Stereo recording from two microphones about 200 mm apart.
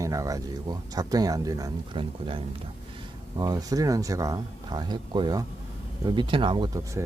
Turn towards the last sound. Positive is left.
turn(degrees=-20)  # may be behind; listen again after turning